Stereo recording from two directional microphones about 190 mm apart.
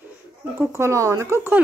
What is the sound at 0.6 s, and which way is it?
Speech, 15° right (ahead or behind).